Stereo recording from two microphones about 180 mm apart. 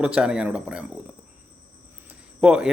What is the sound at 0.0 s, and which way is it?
Speech, 5° right (ahead or behind).